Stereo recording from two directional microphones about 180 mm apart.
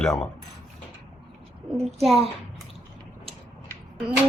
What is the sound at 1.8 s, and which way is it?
Speech, centre (ahead or behind).